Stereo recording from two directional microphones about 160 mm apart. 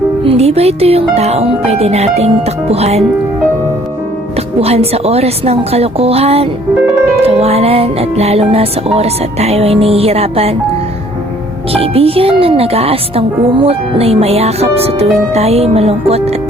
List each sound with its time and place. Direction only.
0.3 s a woman's voice: 40° right (ahead or behind)
4.6 s a woman's voice: 40° right (ahead or behind)
11.7 s a woman's voice: 35° right (ahead or behind)